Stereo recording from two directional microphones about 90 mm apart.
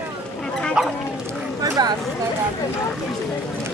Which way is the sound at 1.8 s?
50° right (ahead or behind).